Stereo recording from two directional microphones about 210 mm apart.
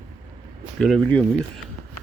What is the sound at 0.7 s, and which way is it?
Speech, centre (ahead or behind).